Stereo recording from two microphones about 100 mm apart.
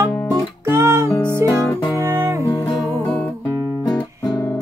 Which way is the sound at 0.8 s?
25° right (ahead or behind).